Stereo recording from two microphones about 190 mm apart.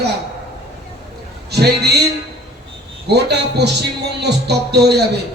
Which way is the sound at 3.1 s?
60° right (ahead or behind).